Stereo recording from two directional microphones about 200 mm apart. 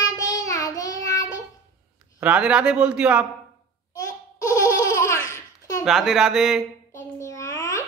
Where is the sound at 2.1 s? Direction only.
5° right (ahead or behind).